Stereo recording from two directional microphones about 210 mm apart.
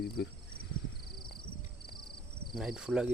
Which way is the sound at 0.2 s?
55° left (ahead or behind).